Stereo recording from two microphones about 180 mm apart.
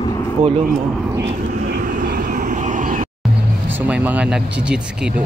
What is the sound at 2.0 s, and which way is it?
Vehicle, 45° right (ahead or behind).